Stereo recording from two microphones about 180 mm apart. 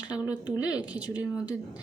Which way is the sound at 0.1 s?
20° left (ahead or behind).